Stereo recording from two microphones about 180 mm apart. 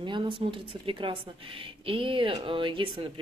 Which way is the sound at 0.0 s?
25° right (ahead or behind).